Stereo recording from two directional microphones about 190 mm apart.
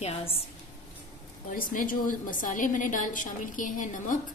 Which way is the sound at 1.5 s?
45° left (ahead or behind).